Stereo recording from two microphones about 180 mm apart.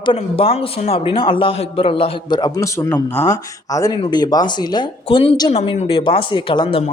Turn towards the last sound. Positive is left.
turn(degrees=30)  # may be behind; listen again after turning